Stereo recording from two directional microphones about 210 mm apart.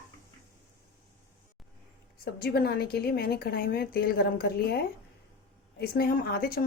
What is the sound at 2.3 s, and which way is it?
A woman's voice, 50° left (ahead or behind).